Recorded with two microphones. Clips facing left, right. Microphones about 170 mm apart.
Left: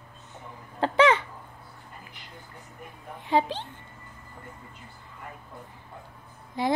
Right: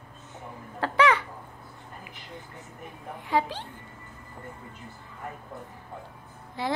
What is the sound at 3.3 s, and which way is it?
Speech, 20° left (ahead or behind).